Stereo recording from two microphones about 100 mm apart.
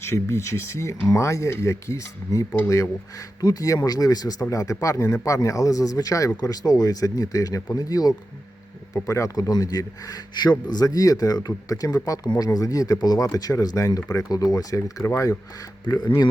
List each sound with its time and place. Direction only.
0.0 s speech: 30° left (ahead or behind)
15.9 s speech: 45° left (ahead or behind)